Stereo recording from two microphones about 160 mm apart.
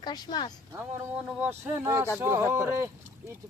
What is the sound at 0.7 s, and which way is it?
Speech, 5° right (ahead or behind).